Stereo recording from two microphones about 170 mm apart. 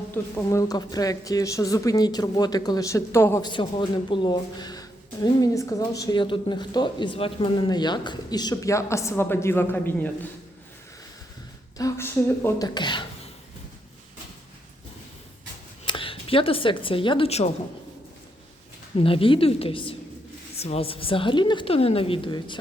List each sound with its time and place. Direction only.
0.1 s speech: 15° left (ahead or behind)
3.4 s speech: 25° left (ahead or behind); by 10.1 s 10° left (ahead or behind)
11.8 s speech: 15° left (ahead or behind)
12.6 s speech: 25° left (ahead or behind)
15.9 s a woman's voice: 30° left (ahead or behind)
18.9 s a woman's voice: 30° left (ahead or behind)